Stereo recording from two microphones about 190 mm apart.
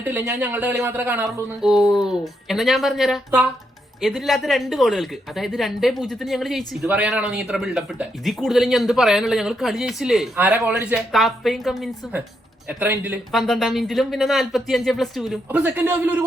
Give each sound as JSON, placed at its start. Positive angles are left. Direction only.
{"t": 0.0, "sound": "speech", "side_deg": -10}